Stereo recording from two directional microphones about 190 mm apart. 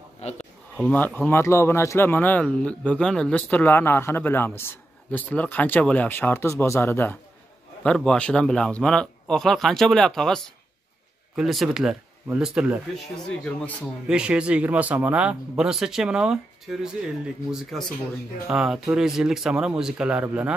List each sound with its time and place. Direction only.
0.2 s speech: 35° left (ahead or behind)
0.7 s speech: 5° left (ahead or behind)